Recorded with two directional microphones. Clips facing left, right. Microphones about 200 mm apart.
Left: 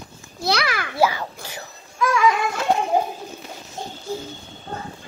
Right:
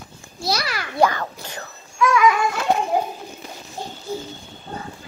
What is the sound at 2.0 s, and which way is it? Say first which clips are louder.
Music: right 2 dB; 30° left (ahead or behind).